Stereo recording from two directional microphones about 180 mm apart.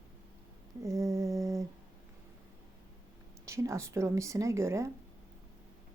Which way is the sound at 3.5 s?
15° right (ahead or behind).